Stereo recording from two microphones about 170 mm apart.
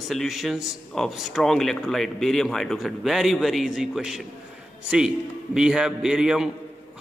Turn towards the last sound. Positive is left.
turn(degrees=-5)  # may be behind; listen again after turning